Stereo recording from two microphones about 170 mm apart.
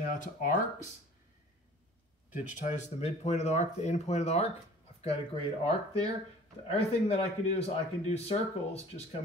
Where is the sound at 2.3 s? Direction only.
40° left (ahead or behind).